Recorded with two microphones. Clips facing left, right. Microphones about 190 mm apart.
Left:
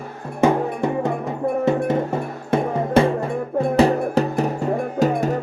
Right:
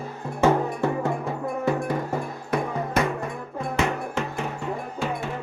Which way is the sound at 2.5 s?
25° left (ahead or behind).